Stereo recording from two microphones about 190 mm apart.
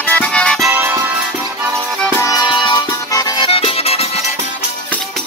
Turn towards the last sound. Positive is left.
turn(degrees=30)  # may be behind; listen again after turning